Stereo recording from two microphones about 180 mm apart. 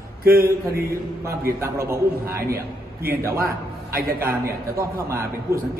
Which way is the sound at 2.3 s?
55° right (ahead or behind).